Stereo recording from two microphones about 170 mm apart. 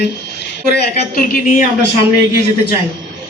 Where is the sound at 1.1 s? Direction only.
50° left (ahead or behind).